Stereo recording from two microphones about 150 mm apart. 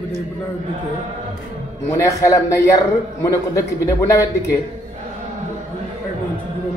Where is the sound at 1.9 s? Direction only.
20° left (ahead or behind).